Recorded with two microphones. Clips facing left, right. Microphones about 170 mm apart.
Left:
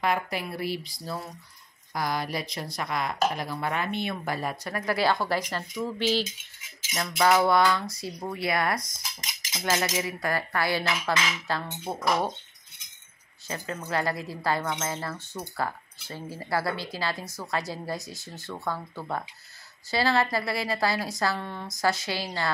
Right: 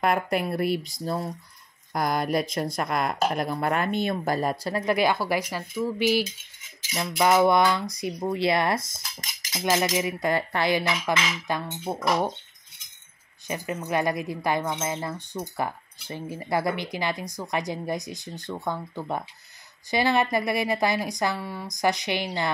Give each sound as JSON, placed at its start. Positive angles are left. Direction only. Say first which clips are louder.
{"t": 0.0, "sound": "speech", "louder": "right 4 dB", "side_deg": -50}
{"t": 4.7, "sound": "cutlery", "louder": "right 2 dB", "side_deg": -20}
{"t": 5.1, "sound": "speech", "louder": "right 1 dB", "side_deg": -10}
{"t": 7.0, "sound": "cutlery", "louder": "right 2 dB", "side_deg": -15}
{"t": 11.9, "sound": "speech", "louder": "right 2 dB", "side_deg": -10}
{"t": 13.5, "sound": "cutlery", "louder": "right 4 dB", "side_deg": -20}
{"t": 13.8, "sound": "speech", "louder": "right 3 dB", "side_deg": -20}